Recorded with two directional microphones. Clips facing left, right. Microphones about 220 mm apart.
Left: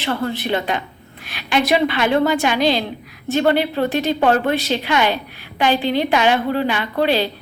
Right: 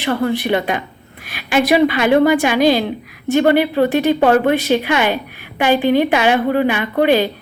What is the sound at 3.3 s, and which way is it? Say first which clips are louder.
A woman's voice: right 4 dB; 15° right (ahead or behind).